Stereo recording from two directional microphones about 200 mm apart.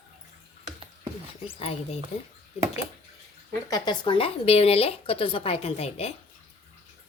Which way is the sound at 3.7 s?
25° left (ahead or behind).